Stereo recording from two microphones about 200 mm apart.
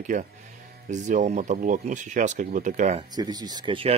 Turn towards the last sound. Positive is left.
turn(degrees=-25)  # may be behind; listen again after turning